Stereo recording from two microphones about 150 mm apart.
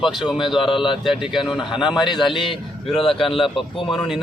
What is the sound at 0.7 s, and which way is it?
Speech, 35° left (ahead or behind).